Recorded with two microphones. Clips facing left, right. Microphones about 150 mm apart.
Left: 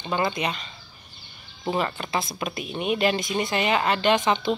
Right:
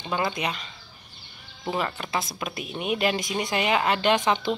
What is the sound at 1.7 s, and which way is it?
Speech, centre (ahead or behind).